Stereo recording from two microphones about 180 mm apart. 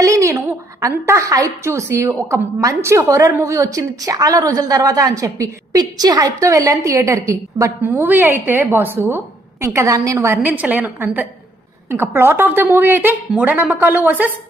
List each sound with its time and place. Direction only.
0.0 s a woman's voice: 15° right (ahead or behind)